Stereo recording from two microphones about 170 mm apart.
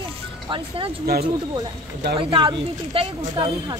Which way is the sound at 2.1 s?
30° right (ahead or behind).